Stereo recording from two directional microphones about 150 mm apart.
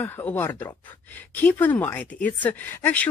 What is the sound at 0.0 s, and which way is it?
Speech, 15° left (ahead or behind).